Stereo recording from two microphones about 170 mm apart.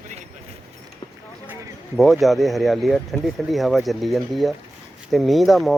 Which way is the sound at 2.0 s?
Centre (ahead or behind).